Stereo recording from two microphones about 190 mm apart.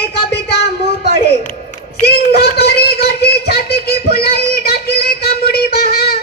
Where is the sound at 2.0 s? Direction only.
60° left (ahead or behind).